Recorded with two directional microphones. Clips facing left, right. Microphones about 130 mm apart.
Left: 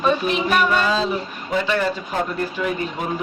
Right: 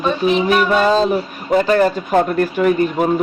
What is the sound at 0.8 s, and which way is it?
Speech, 50° right (ahead or behind).